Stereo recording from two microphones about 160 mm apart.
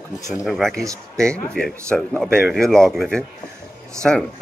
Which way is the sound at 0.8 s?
20° right (ahead or behind).